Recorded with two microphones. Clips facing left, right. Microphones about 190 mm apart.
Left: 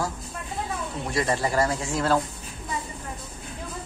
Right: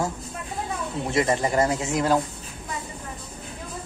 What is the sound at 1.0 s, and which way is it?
Speech, 20° right (ahead or behind).